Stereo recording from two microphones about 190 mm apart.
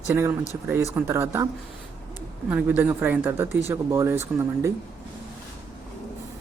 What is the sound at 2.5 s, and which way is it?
Speech, 10° right (ahead or behind).